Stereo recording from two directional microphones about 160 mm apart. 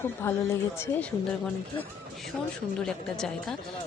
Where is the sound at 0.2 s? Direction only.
15° left (ahead or behind).